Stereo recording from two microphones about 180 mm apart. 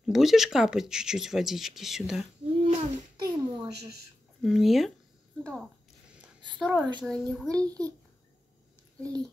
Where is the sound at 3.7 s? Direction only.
65° right (ahead or behind).